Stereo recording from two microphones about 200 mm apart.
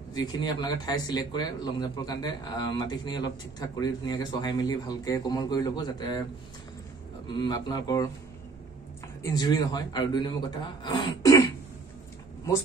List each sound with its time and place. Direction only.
0.1 s speech: 20° left (ahead or behind)
7.2 s speech: 20° left (ahead or behind)
9.2 s speech: 20° left (ahead or behind)